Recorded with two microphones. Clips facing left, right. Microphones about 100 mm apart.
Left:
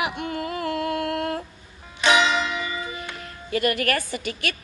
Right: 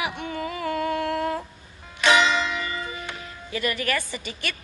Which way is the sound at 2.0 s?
10° left (ahead or behind).